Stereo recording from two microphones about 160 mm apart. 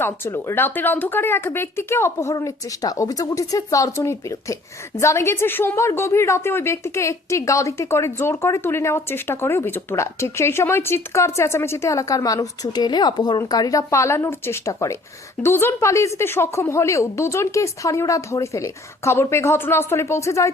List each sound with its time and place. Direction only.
0.0 s a woman's voice: 15° left (ahead or behind)